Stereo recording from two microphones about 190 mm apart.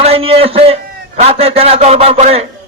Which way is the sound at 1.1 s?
30° right (ahead or behind).